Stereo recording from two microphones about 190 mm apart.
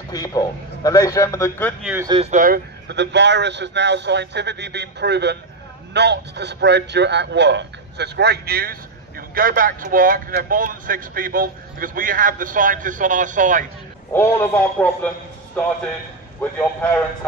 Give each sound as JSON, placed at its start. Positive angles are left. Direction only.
{"t": 0.1, "sound": "a man's voice", "side_deg": 20}
{"t": 2.0, "sound": "speech", "side_deg": -20}
{"t": 2.3, "sound": "a man's voice", "side_deg": -45}
{"t": 2.9, "sound": "a man's voice", "side_deg": -65}
{"t": 14.1, "sound": "a man's voice", "side_deg": 10}
{"t": 16.3, "sound": "a man's voice", "side_deg": 10}